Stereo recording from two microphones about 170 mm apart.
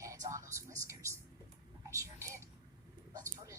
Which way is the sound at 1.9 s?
15° right (ahead or behind).